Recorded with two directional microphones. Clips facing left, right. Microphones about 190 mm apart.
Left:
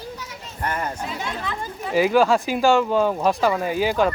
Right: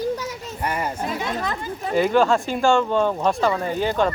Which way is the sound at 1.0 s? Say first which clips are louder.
Right 4 dB; 45° right (ahead or behind).